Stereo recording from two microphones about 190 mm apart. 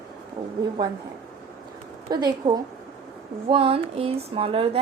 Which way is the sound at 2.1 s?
20° right (ahead or behind).